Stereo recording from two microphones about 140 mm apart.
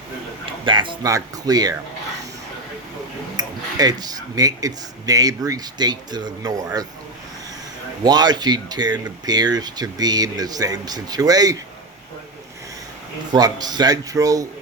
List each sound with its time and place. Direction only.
0.6 s speech: 35° right (ahead or behind)
3.3 s speech: 30° right (ahead or behind)
8.0 s speech: 30° right (ahead or behind)
13.3 s speech: 30° right (ahead or behind)